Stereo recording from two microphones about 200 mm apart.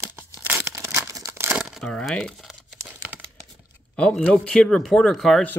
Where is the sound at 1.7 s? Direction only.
5° left (ahead or behind).